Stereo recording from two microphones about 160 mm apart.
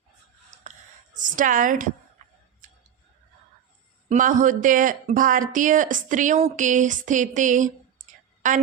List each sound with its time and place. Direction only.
1.1 s a woman's voice: 55° right (ahead or behind)
2.2 s tick-tock: 50° right (ahead or behind)
4.1 s speech: 55° right (ahead or behind)